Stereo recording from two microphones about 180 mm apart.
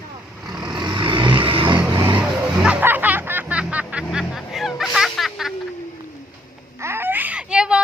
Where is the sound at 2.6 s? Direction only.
10° right (ahead or behind).